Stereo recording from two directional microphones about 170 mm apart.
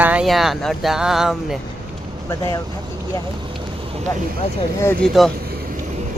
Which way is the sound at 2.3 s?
20° left (ahead or behind).